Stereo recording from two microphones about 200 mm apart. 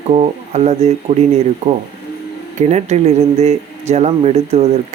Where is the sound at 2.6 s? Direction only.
35° right (ahead or behind).